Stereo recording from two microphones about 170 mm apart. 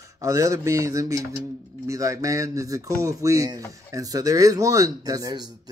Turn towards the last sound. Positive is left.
turn(degrees=-20)  # may be behind; listen again after turning